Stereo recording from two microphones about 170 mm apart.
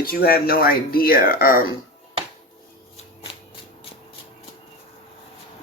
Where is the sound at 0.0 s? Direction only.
60° left (ahead or behind).